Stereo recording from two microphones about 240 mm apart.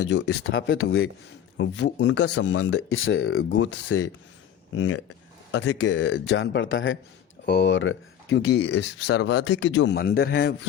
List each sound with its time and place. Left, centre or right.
0.2 s speech: left
2.4 s speech: left
6.1 s speech: left